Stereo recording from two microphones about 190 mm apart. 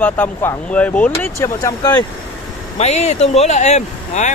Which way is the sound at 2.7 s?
35° left (ahead or behind).